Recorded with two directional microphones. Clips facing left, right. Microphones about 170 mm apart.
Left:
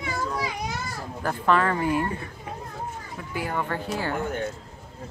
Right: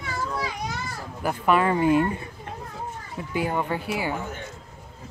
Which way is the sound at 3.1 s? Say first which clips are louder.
Right 4 dB; 20° right (ahead or behind).